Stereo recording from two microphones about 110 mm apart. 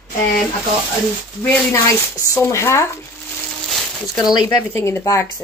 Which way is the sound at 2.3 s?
25° left (ahead or behind).